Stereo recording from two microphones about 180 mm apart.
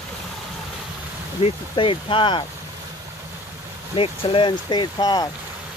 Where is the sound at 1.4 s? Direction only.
30° left (ahead or behind).